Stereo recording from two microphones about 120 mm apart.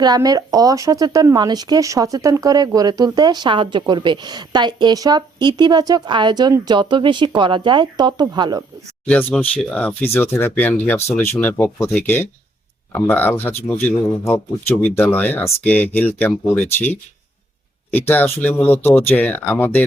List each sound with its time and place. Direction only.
0.0 s speech: 30° right (ahead or behind)
9.0 s speech: 10° left (ahead or behind)
17.9 s speech: 15° left (ahead or behind)